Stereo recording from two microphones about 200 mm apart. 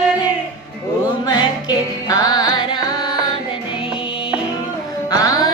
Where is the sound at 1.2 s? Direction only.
20° left (ahead or behind).